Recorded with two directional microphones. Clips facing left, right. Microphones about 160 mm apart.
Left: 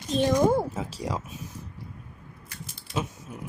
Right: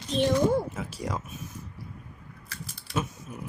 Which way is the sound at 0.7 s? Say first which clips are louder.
Left 3 dB; 35° left (ahead or behind).